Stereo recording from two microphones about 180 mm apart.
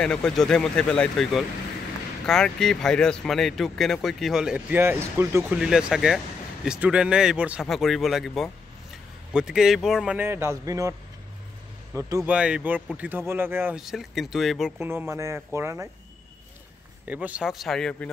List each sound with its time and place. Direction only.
0.0 s speech: 5° left (ahead or behind); by 5.6 s 15° right (ahead or behind)
5.6 s speech: 5° right (ahead or behind)
12.0 s speech: 15° right (ahead or behind)
12.4 s speech: 5° right (ahead or behind)
14.8 s speech: 15° right (ahead or behind)
17.0 s speech: 10° right (ahead or behind)